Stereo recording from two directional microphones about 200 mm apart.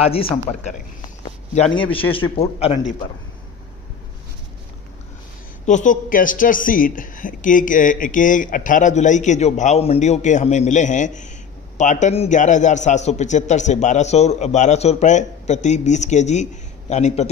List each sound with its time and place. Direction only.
0.0 s a man's voice: 30° left (ahead or behind)
5.7 s a woman's voice: 40° left (ahead or behind)